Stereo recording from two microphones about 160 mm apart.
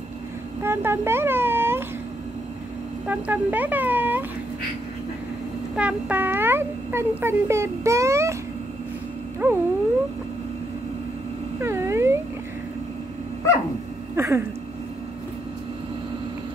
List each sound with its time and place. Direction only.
0.7 s a sound: 15° right (ahead or behind)
3.1 s a child's voice: 10° right (ahead or behind)
5.8 s a child's voice: 10° right (ahead or behind)
9.4 s a child's voice: 10° right (ahead or behind)
11.6 s cat: 15° right (ahead or behind)
14.1 s a sound: 15° right (ahead or behind)